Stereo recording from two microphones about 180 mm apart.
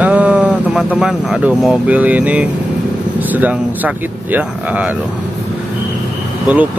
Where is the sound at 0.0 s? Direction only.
5° right (ahead or behind).